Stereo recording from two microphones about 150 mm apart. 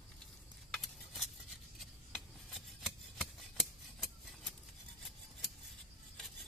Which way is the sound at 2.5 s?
Centre (ahead or behind).